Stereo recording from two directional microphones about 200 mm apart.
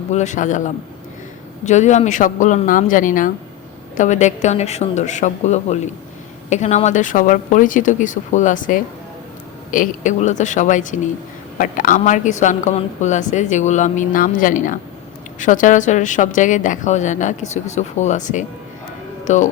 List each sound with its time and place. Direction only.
0.1 s a woman's voice: 35° left (ahead or behind)